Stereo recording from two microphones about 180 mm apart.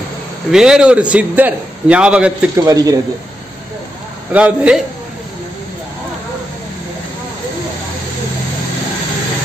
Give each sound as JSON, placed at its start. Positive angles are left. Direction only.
{"t": 0.5, "sound": "a man's voice", "side_deg": -5}
{"t": 2.6, "sound": "speech", "side_deg": -20}
{"t": 4.3, "sound": "a man's voice", "side_deg": -5}